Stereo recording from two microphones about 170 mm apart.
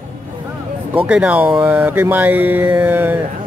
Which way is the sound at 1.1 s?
5° right (ahead or behind).